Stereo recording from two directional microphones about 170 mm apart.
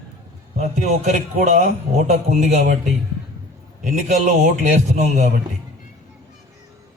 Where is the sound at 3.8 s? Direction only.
45° right (ahead or behind).